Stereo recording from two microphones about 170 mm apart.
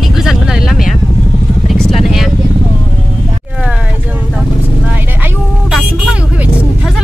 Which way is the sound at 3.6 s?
5° right (ahead or behind).